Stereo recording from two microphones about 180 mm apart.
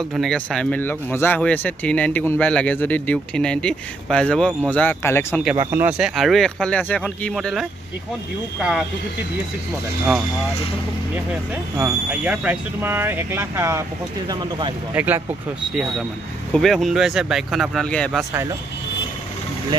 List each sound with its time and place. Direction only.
0.1 s speech: centre (ahead or behind)
5.7 s speech: 10° right (ahead or behind)
11.7 s speech: 10° right (ahead or behind)
15.0 s speech: 10° right (ahead or behind)
16.5 s speech: centre (ahead or behind)
18.3 s speech: 15° right (ahead or behind)